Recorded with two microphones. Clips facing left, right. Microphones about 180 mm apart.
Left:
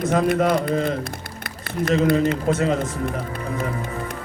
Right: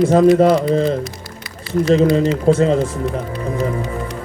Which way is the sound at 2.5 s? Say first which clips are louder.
Right 7 dB; 30° right (ahead or behind).